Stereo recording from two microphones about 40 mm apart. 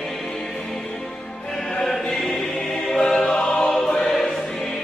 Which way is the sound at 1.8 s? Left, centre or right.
Centre.